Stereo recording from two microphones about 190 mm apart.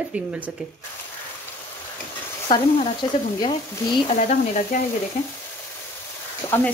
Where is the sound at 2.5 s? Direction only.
25° left (ahead or behind).